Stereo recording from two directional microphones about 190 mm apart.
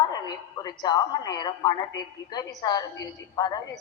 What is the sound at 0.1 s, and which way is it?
A woman's voice, 20° left (ahead or behind).